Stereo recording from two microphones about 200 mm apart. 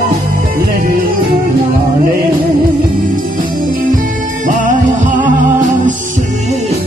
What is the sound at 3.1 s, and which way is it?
Music, 40° right (ahead or behind).